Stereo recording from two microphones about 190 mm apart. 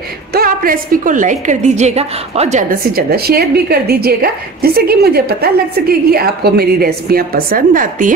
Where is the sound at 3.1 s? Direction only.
55° right (ahead or behind).